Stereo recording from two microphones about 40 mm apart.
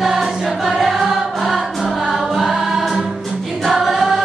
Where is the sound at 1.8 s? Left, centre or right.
Centre.